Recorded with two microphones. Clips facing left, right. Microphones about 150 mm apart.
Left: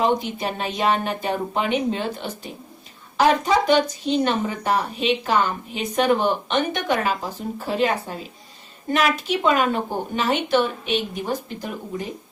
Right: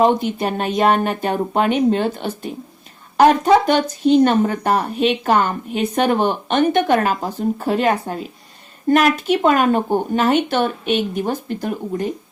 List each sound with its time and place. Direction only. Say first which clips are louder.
0.0 s speech: right 5 dB; 50° right (ahead or behind)